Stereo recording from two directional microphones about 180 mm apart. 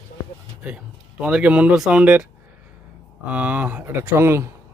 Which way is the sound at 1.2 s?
5° right (ahead or behind).